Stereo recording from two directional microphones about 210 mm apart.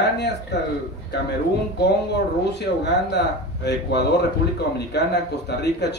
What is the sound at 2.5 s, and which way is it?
Speech, 55° left (ahead or behind).